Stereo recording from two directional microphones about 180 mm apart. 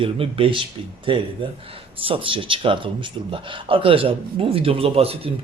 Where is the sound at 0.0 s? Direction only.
30° right (ahead or behind).